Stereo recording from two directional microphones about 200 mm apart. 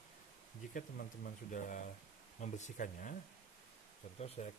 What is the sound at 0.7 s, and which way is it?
Speech, 45° left (ahead or behind).